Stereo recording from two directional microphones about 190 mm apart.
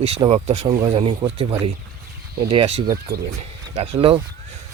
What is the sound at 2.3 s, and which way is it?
Speech, 25° right (ahead or behind).